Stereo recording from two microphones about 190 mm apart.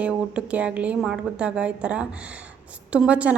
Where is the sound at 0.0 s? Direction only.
5° right (ahead or behind).